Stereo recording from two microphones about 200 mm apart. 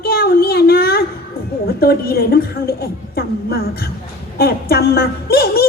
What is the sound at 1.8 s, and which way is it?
A woman's voice, 50° left (ahead or behind).